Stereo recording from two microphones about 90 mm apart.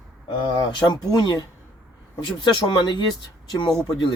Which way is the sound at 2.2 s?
60° left (ahead or behind).